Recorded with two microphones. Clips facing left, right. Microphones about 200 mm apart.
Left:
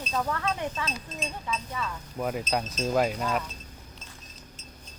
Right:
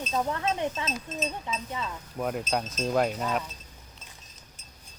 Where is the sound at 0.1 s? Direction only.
20° right (ahead or behind).